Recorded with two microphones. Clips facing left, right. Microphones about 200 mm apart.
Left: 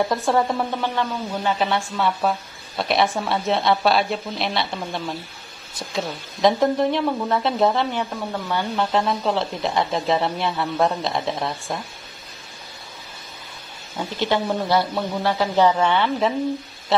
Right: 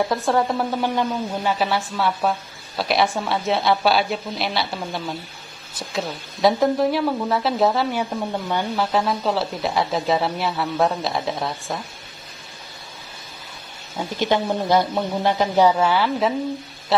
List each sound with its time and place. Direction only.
0.0 s speech: centre (ahead or behind)
0.7 s speech: 15° right (ahead or behind)
2.0 s speech: centre (ahead or behind)
8.7 s speech: 5° right (ahead or behind)
13.9 s speech: 15° right (ahead or behind)